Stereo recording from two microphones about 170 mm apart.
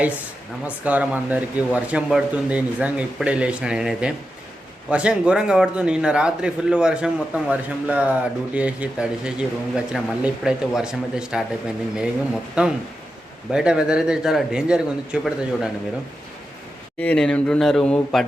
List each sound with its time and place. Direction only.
0.9 s a man's voice: 10° right (ahead or behind)
12.6 s a man's voice: 5° right (ahead or behind)
17.0 s a man's voice: 5° left (ahead or behind)